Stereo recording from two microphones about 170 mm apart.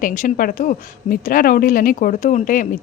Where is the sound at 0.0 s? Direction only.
50° left (ahead or behind).